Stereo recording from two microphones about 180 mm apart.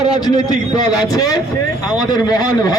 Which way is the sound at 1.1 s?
20° left (ahead or behind).